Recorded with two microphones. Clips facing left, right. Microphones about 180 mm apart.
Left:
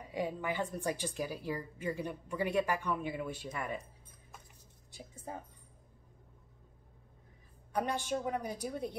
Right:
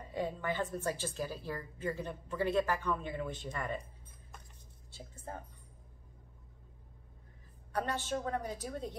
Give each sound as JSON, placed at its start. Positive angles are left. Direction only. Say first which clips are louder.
{"t": 0.0, "sound": "a woman's voice", "louder": "even", "side_deg": 10}
{"t": 4.9, "sound": "speech", "louder": "left 1 dB", "side_deg": 10}
{"t": 7.7, "sound": "a woman's voice", "louder": "left 1 dB", "side_deg": 15}